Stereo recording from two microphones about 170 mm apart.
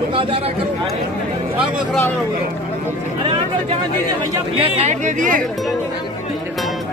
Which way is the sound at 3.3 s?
35° right (ahead or behind).